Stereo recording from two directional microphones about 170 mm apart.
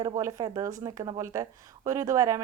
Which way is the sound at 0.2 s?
20° right (ahead or behind).